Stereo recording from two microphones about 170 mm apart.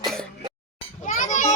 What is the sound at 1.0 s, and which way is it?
Children playing, 45° left (ahead or behind).